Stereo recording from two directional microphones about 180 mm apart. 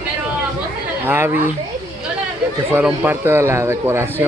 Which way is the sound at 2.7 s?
10° right (ahead or behind).